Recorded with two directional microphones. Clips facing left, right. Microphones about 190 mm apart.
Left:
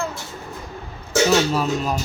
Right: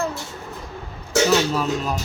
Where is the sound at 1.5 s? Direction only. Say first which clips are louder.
Left 1 dB; 5° left (ahead or behind).